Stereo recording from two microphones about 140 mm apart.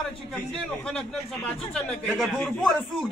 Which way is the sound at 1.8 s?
5° left (ahead or behind).